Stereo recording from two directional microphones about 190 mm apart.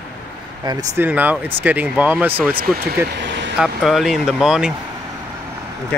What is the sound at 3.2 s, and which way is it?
Vehicle, 70° right (ahead or behind).